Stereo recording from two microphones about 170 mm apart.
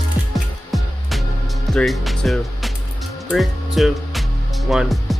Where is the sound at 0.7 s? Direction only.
Centre (ahead or behind).